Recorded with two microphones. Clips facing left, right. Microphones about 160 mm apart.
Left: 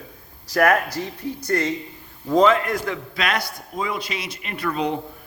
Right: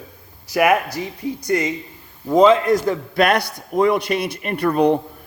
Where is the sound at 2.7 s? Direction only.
40° right (ahead or behind).